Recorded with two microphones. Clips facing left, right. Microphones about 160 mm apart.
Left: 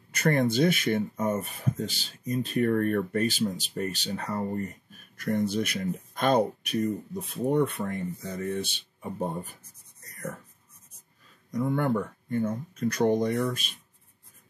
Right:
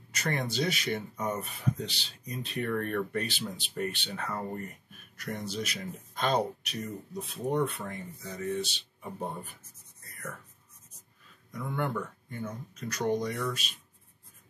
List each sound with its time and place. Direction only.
0.1 s speech: 50° left (ahead or behind)
10.0 s writing: 40° left (ahead or behind)
11.5 s speech: 45° left (ahead or behind)